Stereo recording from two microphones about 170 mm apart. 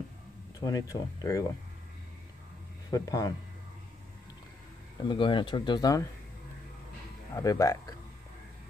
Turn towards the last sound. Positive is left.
turn(degrees=20)  # may be behind; listen again after turning